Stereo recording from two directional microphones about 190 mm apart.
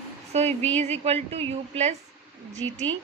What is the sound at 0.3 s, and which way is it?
A woman's voice, 35° right (ahead or behind).